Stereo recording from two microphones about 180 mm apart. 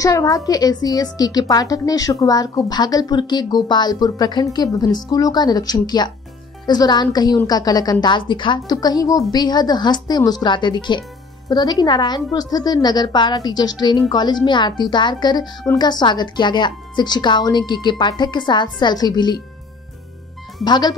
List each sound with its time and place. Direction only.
0.0 s a woman's voice: 20° left (ahead or behind)
20.6 s a woman's voice: 25° left (ahead or behind)